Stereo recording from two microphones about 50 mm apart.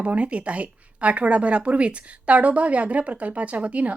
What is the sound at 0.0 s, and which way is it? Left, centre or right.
Speech, right.